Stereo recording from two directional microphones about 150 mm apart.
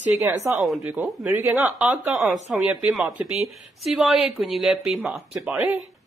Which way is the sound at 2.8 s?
15° right (ahead or behind).